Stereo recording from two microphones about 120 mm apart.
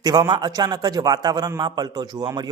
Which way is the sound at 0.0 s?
35° right (ahead or behind).